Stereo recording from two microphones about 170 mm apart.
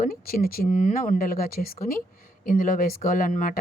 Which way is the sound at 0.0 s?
60° left (ahead or behind).